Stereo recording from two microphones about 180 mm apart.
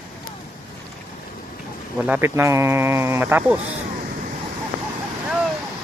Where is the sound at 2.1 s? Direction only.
15° right (ahead or behind).